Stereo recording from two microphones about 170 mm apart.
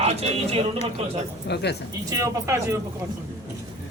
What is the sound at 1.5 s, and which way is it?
Speech, 80° left.